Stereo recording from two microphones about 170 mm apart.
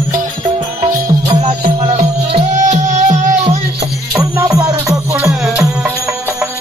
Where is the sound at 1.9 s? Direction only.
40° right (ahead or behind).